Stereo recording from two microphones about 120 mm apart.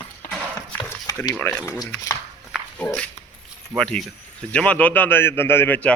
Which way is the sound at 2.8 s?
15° left (ahead or behind).